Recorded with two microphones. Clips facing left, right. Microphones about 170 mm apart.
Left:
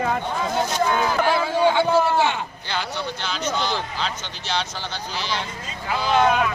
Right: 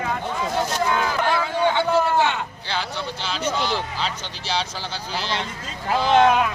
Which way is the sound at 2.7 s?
Centre (ahead or behind).